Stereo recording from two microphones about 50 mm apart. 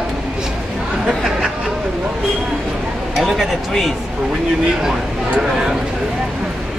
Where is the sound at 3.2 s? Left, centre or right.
Centre.